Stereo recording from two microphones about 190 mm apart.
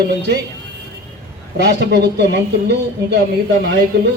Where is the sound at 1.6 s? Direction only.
60° right (ahead or behind).